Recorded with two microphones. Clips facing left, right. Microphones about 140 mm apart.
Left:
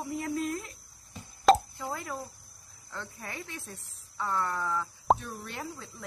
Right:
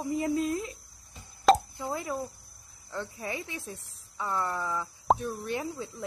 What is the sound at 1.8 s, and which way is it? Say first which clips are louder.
Speech: right 4 dB; 20° right (ahead or behind).